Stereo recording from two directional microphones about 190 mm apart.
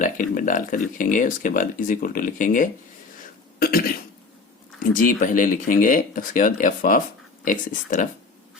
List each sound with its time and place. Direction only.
0.0 s speech: 45° left (ahead or behind)